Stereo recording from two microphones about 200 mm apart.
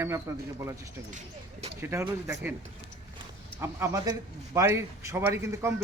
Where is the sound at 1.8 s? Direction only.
10° right (ahead or behind).